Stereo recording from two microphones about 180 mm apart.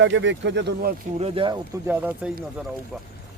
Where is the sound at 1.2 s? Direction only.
30° right (ahead or behind).